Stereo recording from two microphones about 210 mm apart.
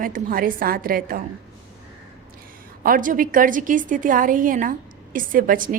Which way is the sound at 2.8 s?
40° right (ahead or behind).